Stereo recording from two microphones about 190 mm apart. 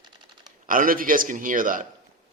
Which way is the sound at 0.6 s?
45° right (ahead or behind).